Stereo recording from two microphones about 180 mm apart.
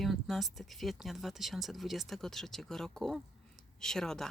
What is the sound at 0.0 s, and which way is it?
Speech, centre (ahead or behind).